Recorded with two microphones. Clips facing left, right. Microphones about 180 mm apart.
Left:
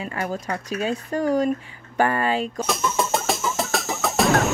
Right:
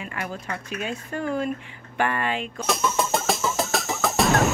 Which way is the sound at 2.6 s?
Centre (ahead or behind).